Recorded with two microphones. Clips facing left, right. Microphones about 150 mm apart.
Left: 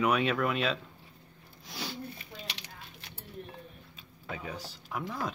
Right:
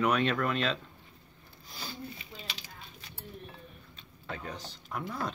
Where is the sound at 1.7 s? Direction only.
80° left.